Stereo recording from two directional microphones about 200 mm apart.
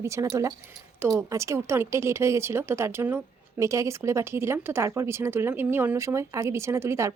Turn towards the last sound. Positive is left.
turn(degrees=-15)  # may be behind; listen again after turning